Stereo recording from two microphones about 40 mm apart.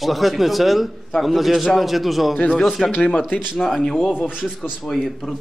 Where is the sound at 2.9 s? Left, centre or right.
Left.